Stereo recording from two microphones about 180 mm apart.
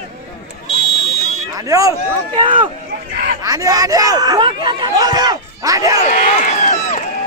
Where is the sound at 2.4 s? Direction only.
25° right (ahead or behind).